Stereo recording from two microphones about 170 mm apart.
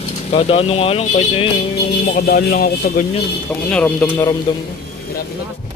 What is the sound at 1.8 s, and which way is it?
Speech, 65° left (ahead or behind).